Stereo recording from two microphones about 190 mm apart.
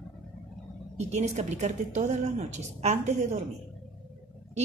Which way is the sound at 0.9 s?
35° right (ahead or behind).